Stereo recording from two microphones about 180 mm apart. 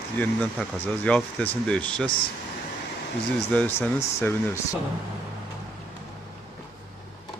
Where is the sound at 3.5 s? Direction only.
10° left (ahead or behind).